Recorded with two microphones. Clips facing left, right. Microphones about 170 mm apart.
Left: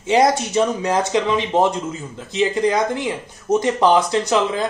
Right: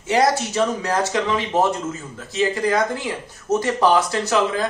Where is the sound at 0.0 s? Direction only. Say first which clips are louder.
Left 2 dB; 20° left (ahead or behind).